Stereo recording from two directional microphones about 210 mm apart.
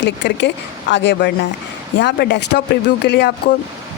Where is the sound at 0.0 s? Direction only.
60° left (ahead or behind).